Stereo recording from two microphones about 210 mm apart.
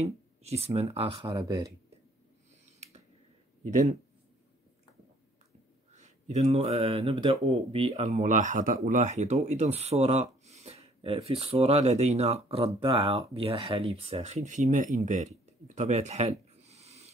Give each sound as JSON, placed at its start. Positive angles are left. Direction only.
{"t": 0.0, "sound": "speech", "side_deg": -30}
{"t": 3.6, "sound": "speech", "side_deg": -35}
{"t": 5.9, "sound": "speech", "side_deg": -30}